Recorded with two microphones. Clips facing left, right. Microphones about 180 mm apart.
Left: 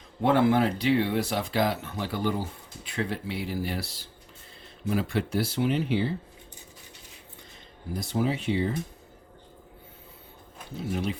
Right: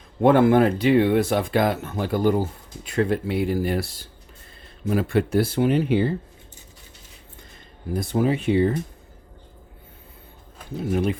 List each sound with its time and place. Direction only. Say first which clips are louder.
0.2 s speech: right 6 dB; 50° right (ahead or behind)
7.9 s speech: right 6 dB; 55° right (ahead or behind)
10.8 s speech: right 7 dB; 55° right (ahead or behind)